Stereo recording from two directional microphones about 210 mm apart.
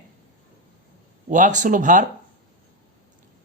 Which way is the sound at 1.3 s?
35° right (ahead or behind).